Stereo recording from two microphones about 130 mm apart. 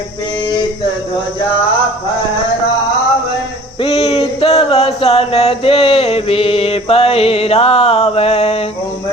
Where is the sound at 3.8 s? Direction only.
50° left (ahead or behind).